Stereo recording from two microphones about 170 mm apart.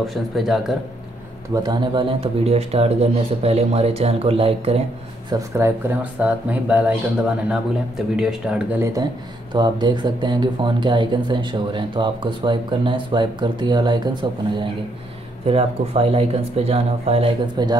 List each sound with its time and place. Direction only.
0.0 s speech: centre (ahead or behind)
1.5 s speech: 25° right (ahead or behind)
5.3 s speech: 15° right (ahead or behind)
8.8 s speech: 25° right (ahead or behind)
15.4 s speech: 35° right (ahead or behind)
17.6 s speech: 25° right (ahead or behind)